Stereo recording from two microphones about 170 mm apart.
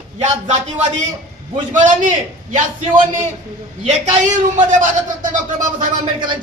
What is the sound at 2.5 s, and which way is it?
Speech, 50° right (ahead or behind).